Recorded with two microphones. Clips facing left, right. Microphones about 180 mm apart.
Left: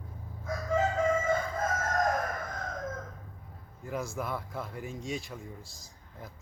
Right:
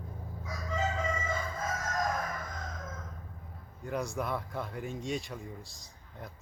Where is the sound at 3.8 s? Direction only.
Centre (ahead or behind).